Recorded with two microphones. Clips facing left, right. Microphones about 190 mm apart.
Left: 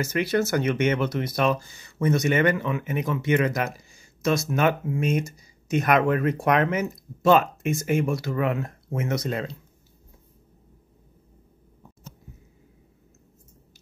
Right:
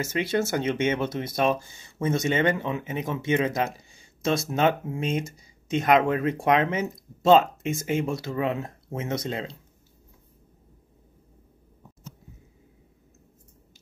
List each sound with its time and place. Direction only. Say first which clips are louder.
0.0 s speech: left 2 dB; 25° right (ahead or behind)